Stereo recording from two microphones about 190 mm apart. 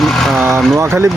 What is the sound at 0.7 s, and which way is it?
Speech, 15° right (ahead or behind).